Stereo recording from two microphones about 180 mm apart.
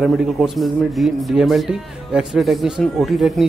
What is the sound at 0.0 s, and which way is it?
Speech, centre (ahead or behind).